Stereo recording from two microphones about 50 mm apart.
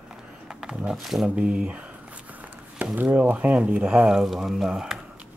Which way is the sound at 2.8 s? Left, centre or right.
Right.